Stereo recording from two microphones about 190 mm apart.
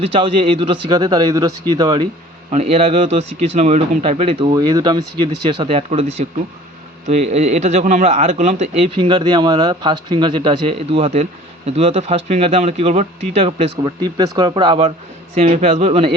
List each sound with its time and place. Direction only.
0.0 s speech: 30° right (ahead or behind)
2.5 s a man's voice: 35° right (ahead or behind)
15.4 s a man's voice: 35° right (ahead or behind)